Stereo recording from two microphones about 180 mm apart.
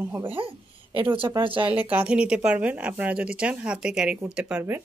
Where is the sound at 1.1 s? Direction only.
30° right (ahead or behind).